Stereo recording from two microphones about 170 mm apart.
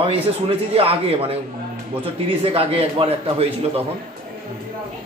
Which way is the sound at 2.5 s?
35° right (ahead or behind).